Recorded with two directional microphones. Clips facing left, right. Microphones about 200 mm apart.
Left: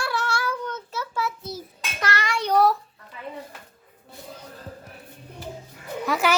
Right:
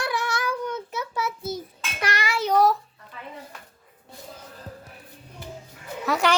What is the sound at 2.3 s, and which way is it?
Child singing, centre (ahead or behind).